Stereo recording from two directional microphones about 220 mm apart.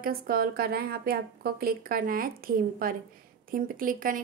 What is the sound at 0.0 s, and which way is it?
A woman's voice, 40° right (ahead or behind).